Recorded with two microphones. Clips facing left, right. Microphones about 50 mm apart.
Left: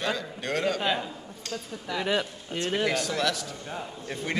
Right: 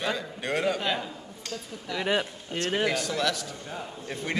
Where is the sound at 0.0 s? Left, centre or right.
Centre.